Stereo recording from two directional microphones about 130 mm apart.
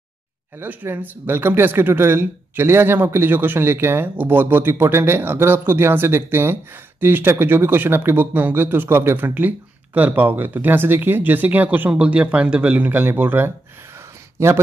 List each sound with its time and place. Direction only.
0.6 s speech: 15° right (ahead or behind)